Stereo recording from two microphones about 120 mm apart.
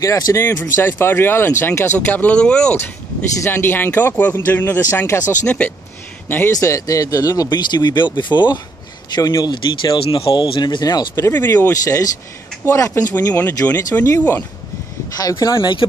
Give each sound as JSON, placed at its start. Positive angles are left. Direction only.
{"t": 0.0, "sound": "a man's voice", "side_deg": 25}
{"t": 6.5, "sound": "speech", "side_deg": 25}
{"t": 11.1, "sound": "speech", "side_deg": 20}
{"t": 11.8, "sound": "speech", "side_deg": 30}
{"t": 13.1, "sound": "speech", "side_deg": 15}